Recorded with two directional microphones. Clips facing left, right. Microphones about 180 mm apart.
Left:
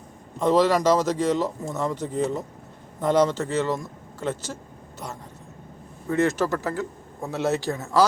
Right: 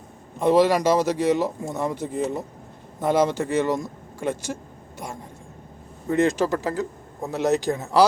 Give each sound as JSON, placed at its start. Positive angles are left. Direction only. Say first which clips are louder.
{"t": 0.3, "sound": "speech", "louder": "right 2 dB", "side_deg": -10}
{"t": 6.1, "sound": "speech", "louder": "right 2 dB", "side_deg": -15}